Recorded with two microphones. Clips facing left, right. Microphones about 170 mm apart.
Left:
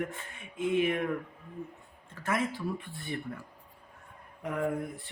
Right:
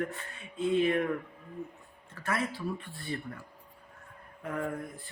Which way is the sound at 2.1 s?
15° left (ahead or behind).